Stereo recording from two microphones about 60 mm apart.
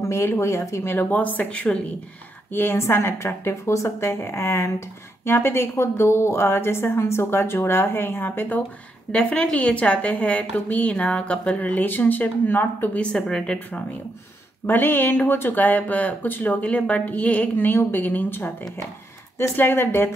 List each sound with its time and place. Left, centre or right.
0.0 s speech: left
1.1 s a woman's voice: left
2.5 s speech: left
9.1 s a woman's voice: centre; by 13.0 s left
13.0 s speech: centre
14.7 s speech: left
16.6 s a woman's voice: left
19.5 s speech: left